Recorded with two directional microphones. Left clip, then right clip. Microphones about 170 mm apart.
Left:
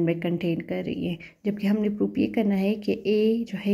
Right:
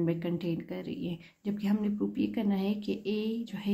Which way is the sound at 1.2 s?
20° left (ahead or behind).